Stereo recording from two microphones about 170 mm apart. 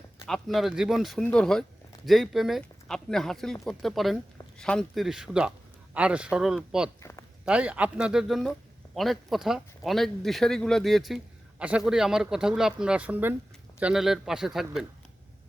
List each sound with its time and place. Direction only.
0.3 s a man's voice: centre (ahead or behind)
7.0 s a sound: 15° left (ahead or behind)
7.4 s a man's voice: 5° right (ahead or behind)